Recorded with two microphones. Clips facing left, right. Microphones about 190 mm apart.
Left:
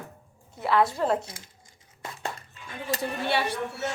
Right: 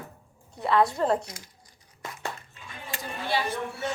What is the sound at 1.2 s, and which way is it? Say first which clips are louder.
Speech: right 1 dB; 25° left (ahead or behind).